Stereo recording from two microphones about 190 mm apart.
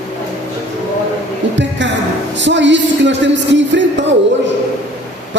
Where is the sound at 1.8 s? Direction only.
70° right (ahead or behind).